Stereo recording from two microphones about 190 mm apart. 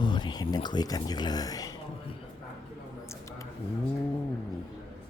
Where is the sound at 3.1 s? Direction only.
15° left (ahead or behind).